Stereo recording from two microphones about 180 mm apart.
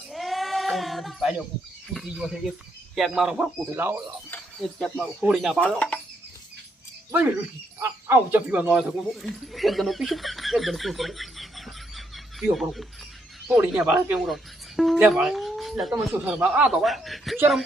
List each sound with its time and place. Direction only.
0.1 s sheep: centre (ahead or behind)
1.9 s speech: centre (ahead or behind)
7.8 s speech: 15° right (ahead or behind)